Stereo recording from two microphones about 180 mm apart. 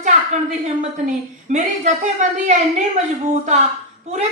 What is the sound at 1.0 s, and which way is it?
A woman's voice, 40° right (ahead or behind).